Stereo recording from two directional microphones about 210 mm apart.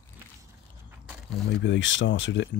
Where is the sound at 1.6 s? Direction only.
60° left (ahead or behind).